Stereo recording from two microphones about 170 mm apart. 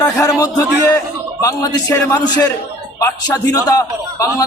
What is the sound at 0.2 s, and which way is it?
A man's voice, 20° left (ahead or behind).